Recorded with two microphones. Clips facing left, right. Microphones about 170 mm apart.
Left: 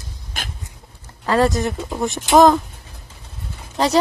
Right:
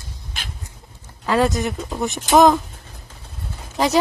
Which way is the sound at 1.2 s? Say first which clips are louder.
Left 1 dB; centre (ahead or behind).